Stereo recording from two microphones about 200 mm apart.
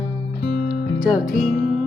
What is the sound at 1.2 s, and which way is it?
Music, 45° left (ahead or behind).